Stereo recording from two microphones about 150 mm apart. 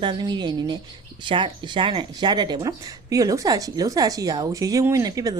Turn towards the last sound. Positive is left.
turn(degrees=-25)  # may be behind; listen again after turning